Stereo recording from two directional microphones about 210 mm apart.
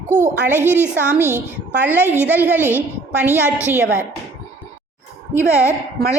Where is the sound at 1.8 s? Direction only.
10° right (ahead or behind).